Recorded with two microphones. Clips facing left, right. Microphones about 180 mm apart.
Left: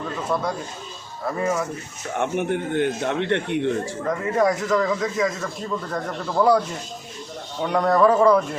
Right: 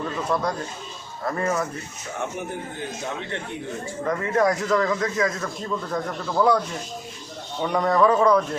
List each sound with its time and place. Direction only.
0.3 s speech: 5° left (ahead or behind)
2.1 s a man's voice: 65° left (ahead or behind)
4.4 s speech: centre (ahead or behind)
7.6 s speech: centre (ahead or behind)